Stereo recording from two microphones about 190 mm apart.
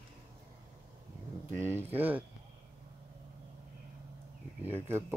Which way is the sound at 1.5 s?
10° right (ahead or behind).